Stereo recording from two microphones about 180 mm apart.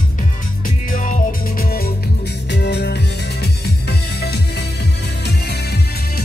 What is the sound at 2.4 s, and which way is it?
Music, 70° left (ahead or behind).